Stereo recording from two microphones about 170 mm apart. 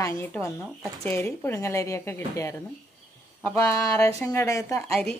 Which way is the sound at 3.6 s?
15° left (ahead or behind).